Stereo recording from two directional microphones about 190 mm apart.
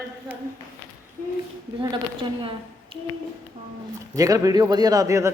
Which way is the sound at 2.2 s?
20° right (ahead or behind).